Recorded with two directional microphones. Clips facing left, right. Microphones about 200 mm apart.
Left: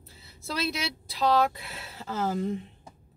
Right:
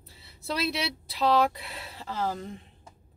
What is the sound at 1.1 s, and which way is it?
Speech, centre (ahead or behind).